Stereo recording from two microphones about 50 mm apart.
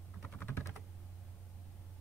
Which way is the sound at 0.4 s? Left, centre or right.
Left.